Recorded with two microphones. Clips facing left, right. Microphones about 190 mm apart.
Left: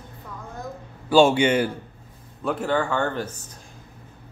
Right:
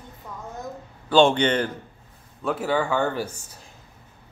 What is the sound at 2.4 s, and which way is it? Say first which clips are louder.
Speech: even; 5° right (ahead or behind).